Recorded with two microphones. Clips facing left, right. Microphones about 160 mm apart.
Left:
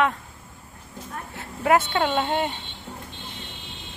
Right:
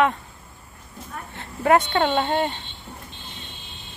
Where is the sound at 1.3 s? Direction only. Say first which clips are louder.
Right 2 dB; 5° left (ahead or behind).